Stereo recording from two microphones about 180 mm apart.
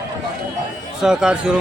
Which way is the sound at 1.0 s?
5° right (ahead or behind).